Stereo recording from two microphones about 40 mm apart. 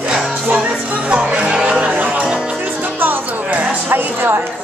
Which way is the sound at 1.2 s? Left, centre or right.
Right.